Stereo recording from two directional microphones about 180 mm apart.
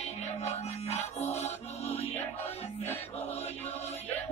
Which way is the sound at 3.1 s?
35° left (ahead or behind).